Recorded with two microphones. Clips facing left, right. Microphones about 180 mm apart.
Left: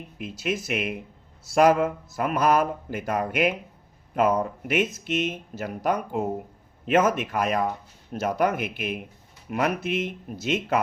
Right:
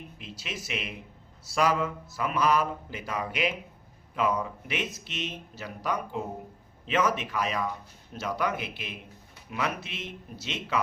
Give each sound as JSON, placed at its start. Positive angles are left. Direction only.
{"t": 0.2, "sound": "speech", "side_deg": 50}